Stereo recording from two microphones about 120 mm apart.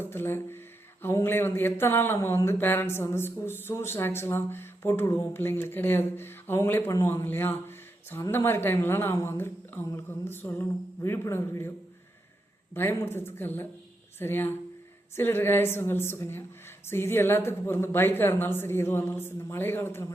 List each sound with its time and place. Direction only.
0.0 s speech: 20° left (ahead or behind)
12.7 s speech: 20° left (ahead or behind)